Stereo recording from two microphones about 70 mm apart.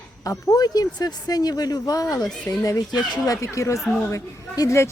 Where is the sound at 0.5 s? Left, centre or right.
Left.